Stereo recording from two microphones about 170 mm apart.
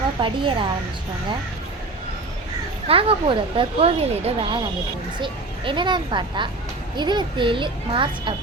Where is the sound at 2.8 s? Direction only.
35° right (ahead or behind).